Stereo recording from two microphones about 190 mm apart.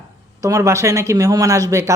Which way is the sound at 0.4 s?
15° right (ahead or behind).